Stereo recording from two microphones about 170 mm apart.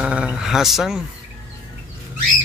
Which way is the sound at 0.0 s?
5° right (ahead or behind).